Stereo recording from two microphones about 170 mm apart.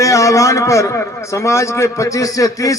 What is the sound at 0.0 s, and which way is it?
A man's voice, 20° left (ahead or behind).